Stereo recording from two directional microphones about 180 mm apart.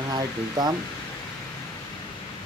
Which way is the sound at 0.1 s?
25° right (ahead or behind).